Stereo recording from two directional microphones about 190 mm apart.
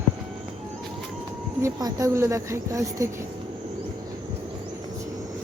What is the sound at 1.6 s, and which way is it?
A woman's voice, 15° right (ahead or behind).